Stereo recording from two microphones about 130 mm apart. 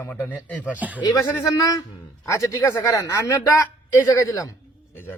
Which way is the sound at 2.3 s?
20° left (ahead or behind).